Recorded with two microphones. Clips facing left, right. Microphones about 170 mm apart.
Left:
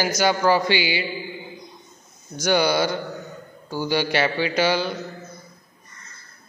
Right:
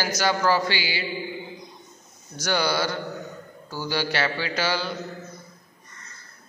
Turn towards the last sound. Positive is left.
turn(degrees=20)  # may be behind; listen again after turning